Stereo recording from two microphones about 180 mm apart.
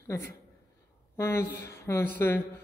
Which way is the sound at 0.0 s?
15° left (ahead or behind).